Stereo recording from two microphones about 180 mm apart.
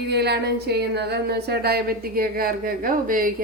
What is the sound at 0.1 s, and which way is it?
Speech, 65° right (ahead or behind).